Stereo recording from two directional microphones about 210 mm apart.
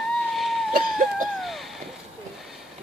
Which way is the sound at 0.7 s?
45° right (ahead or behind).